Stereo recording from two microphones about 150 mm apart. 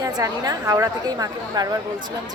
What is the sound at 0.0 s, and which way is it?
A woman's voice, 25° right (ahead or behind).